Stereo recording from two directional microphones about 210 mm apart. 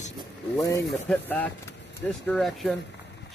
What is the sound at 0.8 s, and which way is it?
Speech, 5° left (ahead or behind).